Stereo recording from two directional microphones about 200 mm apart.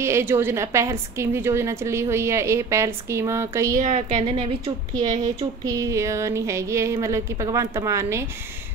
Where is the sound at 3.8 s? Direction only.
35° right (ahead or behind).